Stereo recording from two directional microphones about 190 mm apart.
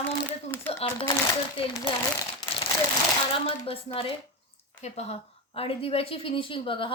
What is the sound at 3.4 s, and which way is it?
A woman's voice, 30° left (ahead or behind).